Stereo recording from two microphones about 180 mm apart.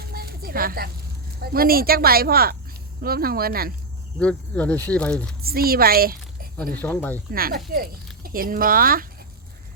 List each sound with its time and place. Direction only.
0.1 s a sound: 55° right (ahead or behind)
1.4 s speech: 55° right (ahead or behind)
4.2 s speech: 5° left (ahead or behind)
5.4 s a woman's voice: 55° right (ahead or behind)
6.7 s speech: 10° left (ahead or behind)
7.3 s speech: 55° right (ahead or behind)